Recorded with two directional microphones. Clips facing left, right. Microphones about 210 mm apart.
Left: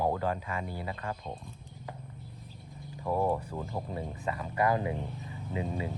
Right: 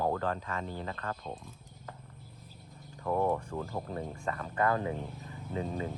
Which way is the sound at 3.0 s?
10° left (ahead or behind).